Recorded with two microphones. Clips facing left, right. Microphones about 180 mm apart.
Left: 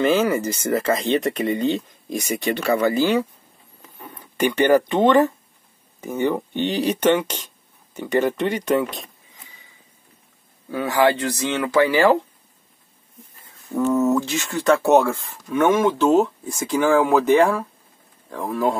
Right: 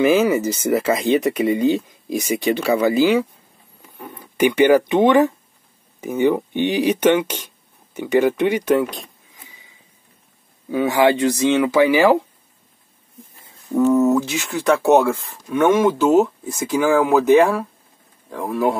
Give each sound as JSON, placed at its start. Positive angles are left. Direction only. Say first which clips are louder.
{"t": 0.0, "sound": "speech", "louder": "right 3 dB", "side_deg": -10}
{"t": 4.4, "sound": "speech", "louder": "right 3 dB", "side_deg": -10}
{"t": 10.7, "sound": "speech", "louder": "right 3 dB", "side_deg": -15}
{"t": 13.7, "sound": "speech", "louder": "right 4 dB", "side_deg": -15}
{"t": 14.0, "sound": "speech", "louder": "right 2 dB", "side_deg": 0}
{"t": 15.0, "sound": "speech", "louder": "right 1 dB", "side_deg": -15}
{"t": 15.5, "sound": "speech", "louder": "right 2 dB", "side_deg": 0}